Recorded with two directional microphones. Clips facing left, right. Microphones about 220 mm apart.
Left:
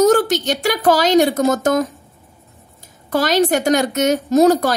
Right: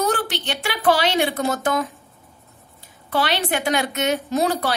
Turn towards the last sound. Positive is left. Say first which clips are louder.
# left 9 dB
turn(degrees=45)  # may be behind; listen again after turning